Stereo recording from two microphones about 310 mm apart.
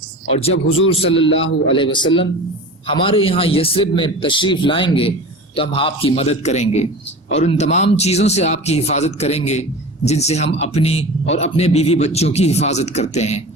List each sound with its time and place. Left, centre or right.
0.9 s speech: centre
1.1 s a man's voice: left
1.7 s speech: centre